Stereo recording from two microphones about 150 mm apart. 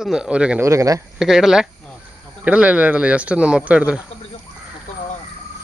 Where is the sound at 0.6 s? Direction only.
20° right (ahead or behind).